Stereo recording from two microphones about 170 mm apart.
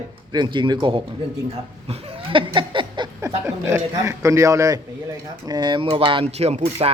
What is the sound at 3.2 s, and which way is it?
A man's voice, 15° right (ahead or behind).